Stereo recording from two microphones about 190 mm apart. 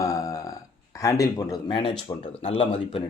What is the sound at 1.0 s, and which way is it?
Speech, 15° left (ahead or behind).